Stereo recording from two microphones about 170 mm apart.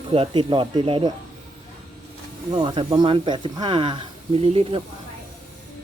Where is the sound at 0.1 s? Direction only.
30° right (ahead or behind).